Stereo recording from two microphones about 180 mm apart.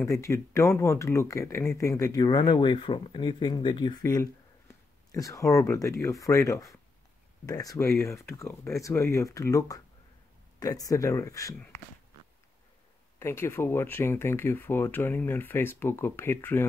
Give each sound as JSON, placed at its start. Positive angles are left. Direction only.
{"t": 0.0, "sound": "speech", "side_deg": 15}
{"t": 13.2, "sound": "speech", "side_deg": 15}